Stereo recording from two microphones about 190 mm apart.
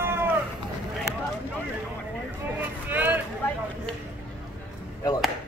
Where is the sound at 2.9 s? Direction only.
10° right (ahead or behind).